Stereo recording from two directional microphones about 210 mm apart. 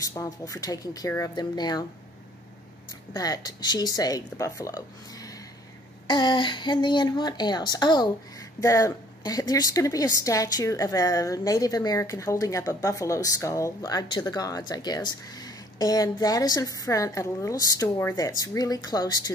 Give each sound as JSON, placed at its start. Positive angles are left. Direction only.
{"t": 0.0, "sound": "a woman's voice", "side_deg": 15}
{"t": 3.1, "sound": "a woman's voice", "side_deg": 20}
{"t": 5.1, "sound": "a sound", "side_deg": 15}
{"t": 6.0, "sound": "a woman's voice", "side_deg": 20}